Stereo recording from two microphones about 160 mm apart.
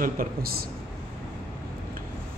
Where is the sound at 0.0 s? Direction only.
60° right (ahead or behind).